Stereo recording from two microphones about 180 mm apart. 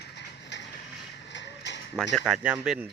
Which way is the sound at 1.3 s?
80° left.